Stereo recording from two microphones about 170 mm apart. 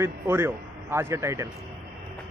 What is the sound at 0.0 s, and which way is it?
A man's voice, 15° right (ahead or behind).